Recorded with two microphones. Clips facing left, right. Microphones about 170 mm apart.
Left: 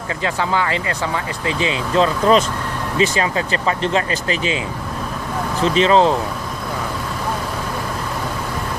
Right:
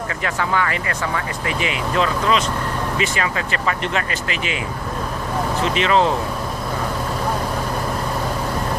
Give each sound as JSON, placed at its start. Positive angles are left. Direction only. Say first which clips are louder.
{"t": 0.2, "sound": "speech", "louder": "left 2 dB", "side_deg": 25}
{"t": 5.6, "sound": "speech", "louder": "left 5 dB", "side_deg": 35}